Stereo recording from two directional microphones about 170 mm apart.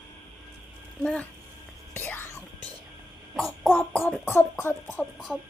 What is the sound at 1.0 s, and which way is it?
Speech, 5° left (ahead or behind).